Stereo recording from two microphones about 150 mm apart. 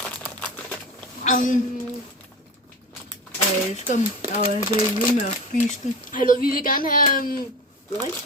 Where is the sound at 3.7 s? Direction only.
50° left (ahead or behind).